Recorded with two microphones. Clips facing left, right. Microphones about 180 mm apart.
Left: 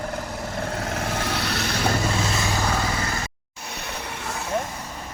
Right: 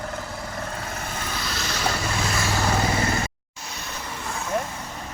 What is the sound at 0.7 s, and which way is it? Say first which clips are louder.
Vehicle: left 5 dB; 70° left (ahead or behind).